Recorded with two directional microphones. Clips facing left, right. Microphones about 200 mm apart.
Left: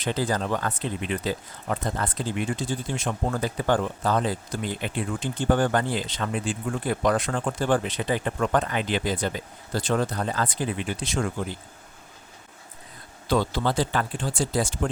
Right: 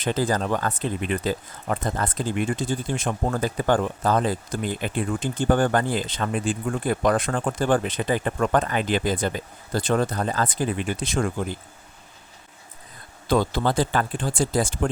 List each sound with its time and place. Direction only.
0.0 s speech: 50° right (ahead or behind)
13.2 s speech: 50° right (ahead or behind)